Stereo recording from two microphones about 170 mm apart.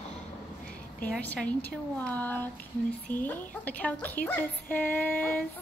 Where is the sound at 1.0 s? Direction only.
10° left (ahead or behind).